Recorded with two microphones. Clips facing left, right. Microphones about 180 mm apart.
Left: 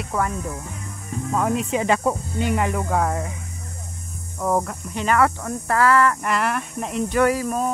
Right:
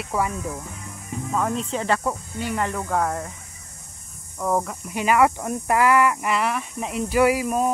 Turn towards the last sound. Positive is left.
turn(degrees=-10)  # may be behind; listen again after turning